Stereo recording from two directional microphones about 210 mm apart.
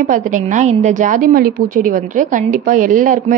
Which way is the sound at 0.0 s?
35° right (ahead or behind).